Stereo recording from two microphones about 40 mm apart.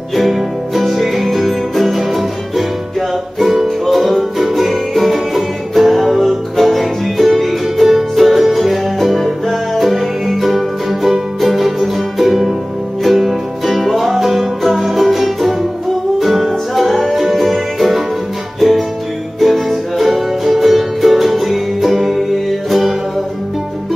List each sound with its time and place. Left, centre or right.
0.1 s music: centre
3.3 s music: centre